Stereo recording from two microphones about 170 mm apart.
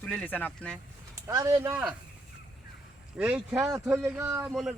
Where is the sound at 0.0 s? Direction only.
5° left (ahead or behind).